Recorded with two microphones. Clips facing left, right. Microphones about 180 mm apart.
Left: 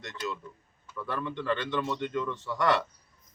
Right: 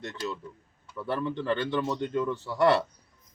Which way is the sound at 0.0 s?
35° right (ahead or behind).